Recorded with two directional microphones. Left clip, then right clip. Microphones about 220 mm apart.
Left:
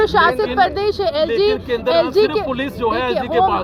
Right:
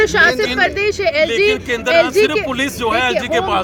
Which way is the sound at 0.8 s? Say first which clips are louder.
Right 1 dB; centre (ahead or behind).